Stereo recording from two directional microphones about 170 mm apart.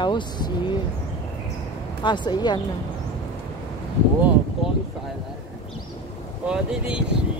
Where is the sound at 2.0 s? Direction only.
25° left (ahead or behind).